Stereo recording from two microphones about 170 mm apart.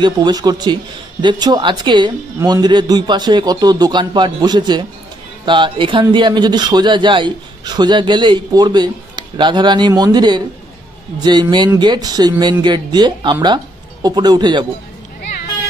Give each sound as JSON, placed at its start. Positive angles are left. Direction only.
{"t": 0.0, "sound": "a man's voice", "side_deg": -25}